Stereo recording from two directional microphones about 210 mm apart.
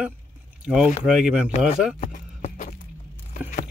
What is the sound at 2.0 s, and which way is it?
Clip-clop, 35° left (ahead or behind).